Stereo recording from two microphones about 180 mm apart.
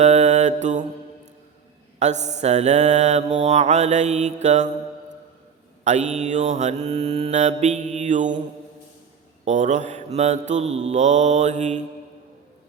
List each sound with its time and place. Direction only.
0.0 s mantra: 40° right (ahead or behind)
2.0 s mantra: 40° right (ahead or behind)
5.8 s mantra: 40° right (ahead or behind)
9.4 s mantra: 40° right (ahead or behind)